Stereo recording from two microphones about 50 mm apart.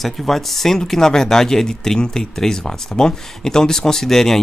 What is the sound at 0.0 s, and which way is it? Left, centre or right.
A man's voice, centre.